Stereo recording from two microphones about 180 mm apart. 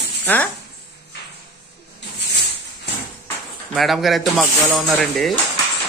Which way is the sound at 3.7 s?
Centre (ahead or behind).